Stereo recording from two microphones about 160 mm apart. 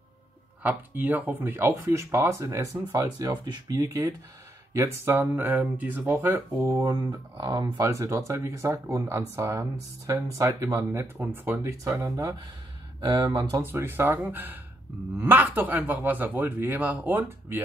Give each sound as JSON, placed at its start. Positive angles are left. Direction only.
{"t": 0.6, "sound": "speech", "side_deg": -10}
{"t": 13.3, "sound": "speech", "side_deg": -30}
{"t": 13.6, "sound": "speech", "side_deg": -15}